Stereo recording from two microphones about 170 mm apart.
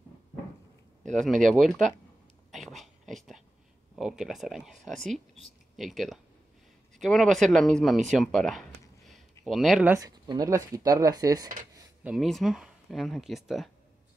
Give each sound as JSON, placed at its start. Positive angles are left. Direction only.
{"t": 1.1, "sound": "speech", "side_deg": 0}
{"t": 2.5, "sound": "a sound", "side_deg": 0}
{"t": 3.9, "sound": "speech", "side_deg": 0}
{"t": 8.1, "sound": "a sound", "side_deg": 0}
{"t": 9.5, "sound": "speech", "side_deg": 0}
{"t": 9.8, "sound": "speech", "side_deg": -20}
{"t": 12.0, "sound": "speech", "side_deg": -5}